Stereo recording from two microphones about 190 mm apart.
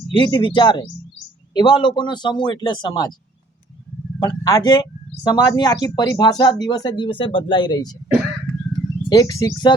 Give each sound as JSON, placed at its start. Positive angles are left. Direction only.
{"t": 0.1, "sound": "a man's voice", "side_deg": 25}
{"t": 4.2, "sound": "a man's voice", "side_deg": 20}
{"t": 9.0, "sound": "a man's voice", "side_deg": 20}